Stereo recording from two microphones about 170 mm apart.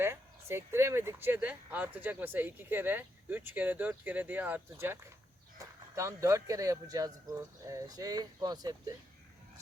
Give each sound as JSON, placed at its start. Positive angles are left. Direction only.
{"t": 0.0, "sound": "speech", "side_deg": -15}